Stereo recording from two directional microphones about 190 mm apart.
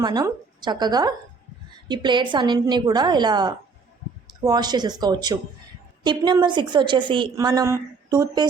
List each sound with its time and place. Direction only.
0.0 s a woman's voice: 20° right (ahead or behind)